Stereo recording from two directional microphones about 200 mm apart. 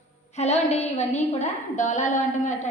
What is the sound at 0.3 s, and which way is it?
A woman's voice, 35° left (ahead or behind).